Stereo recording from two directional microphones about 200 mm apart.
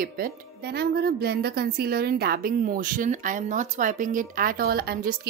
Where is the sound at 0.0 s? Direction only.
50° right (ahead or behind).